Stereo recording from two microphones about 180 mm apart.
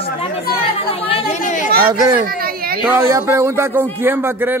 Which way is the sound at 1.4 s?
45° left (ahead or behind).